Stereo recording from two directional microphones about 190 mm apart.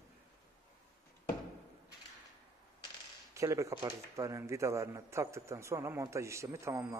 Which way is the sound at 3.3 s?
15° right (ahead or behind).